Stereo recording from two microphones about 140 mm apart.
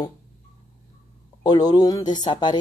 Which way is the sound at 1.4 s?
30° left (ahead or behind).